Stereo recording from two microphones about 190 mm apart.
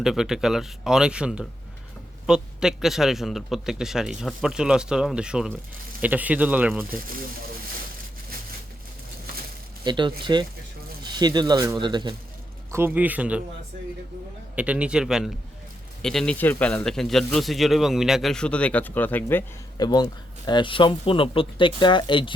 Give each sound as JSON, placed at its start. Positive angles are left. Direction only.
{"t": 0.0, "sound": "a man's voice", "side_deg": -5}
{"t": 9.8, "sound": "speech", "side_deg": -25}
{"t": 12.7, "sound": "speech", "side_deg": -10}
{"t": 14.5, "sound": "a man's voice", "side_deg": -5}
{"t": 19.7, "sound": "speech", "side_deg": 20}